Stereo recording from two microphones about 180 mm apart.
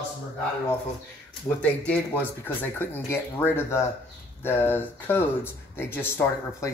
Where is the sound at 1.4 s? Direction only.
10° left (ahead or behind).